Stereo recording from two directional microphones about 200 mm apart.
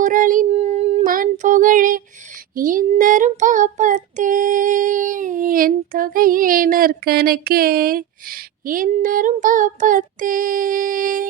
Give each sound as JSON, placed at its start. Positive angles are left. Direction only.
{"t": 0.0, "sound": "child singing", "side_deg": -40}
{"t": 0.5, "sound": "child singing", "side_deg": -30}
{"t": 1.1, "sound": "child singing", "side_deg": -40}